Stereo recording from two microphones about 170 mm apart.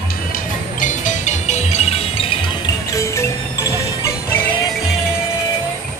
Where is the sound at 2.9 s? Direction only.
20° left (ahead or behind).